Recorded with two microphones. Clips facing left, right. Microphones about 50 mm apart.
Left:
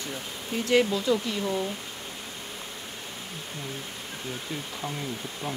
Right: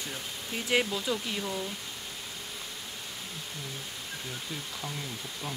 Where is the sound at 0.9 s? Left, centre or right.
Centre.